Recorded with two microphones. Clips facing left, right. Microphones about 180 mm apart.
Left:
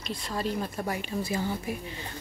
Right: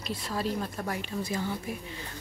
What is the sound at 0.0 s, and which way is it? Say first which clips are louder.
Speech: even; 5° right (ahead or behind).